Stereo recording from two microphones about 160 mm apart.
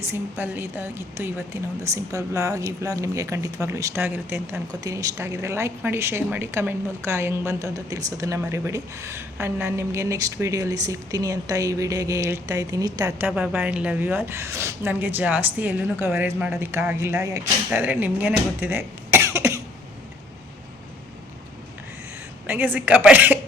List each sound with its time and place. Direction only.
0.1 s a woman's voice: 15° right (ahead or behind)
22.4 s a woman's voice: 10° right (ahead or behind)